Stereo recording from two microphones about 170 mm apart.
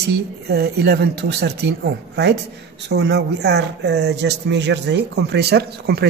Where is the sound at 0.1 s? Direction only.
70° right (ahead or behind).